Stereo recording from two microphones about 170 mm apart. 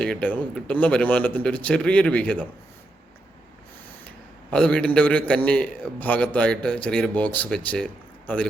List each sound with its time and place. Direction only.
0.0 s a man's voice: 5° left (ahead or behind)
4.5 s a man's voice: 5° left (ahead or behind)